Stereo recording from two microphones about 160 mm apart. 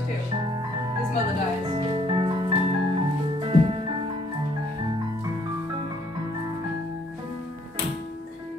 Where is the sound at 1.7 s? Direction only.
35° right (ahead or behind).